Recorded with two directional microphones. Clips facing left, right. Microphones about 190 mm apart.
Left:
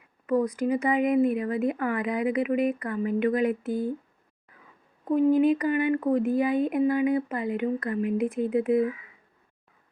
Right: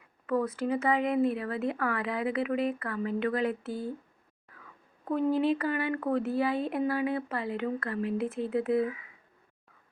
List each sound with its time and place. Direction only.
0.3 s speech: 15° left (ahead or behind)
5.0 s speech: 15° left (ahead or behind)